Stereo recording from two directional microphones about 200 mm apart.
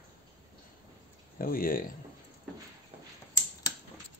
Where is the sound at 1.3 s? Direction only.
45° left (ahead or behind).